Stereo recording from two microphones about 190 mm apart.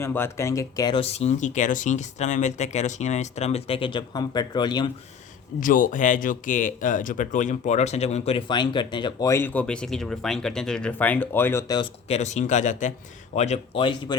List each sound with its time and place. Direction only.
0.0 s speech: 10° left (ahead or behind)
5.5 s speech: 45° left (ahead or behind); by 11.8 s 10° left (ahead or behind)
11.8 s speech: 35° left (ahead or behind)